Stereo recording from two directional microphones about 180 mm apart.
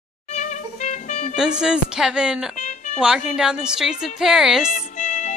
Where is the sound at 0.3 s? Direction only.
40° left (ahead or behind).